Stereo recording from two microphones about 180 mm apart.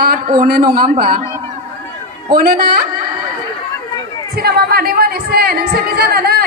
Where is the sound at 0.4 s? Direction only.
55° right (ahead or behind).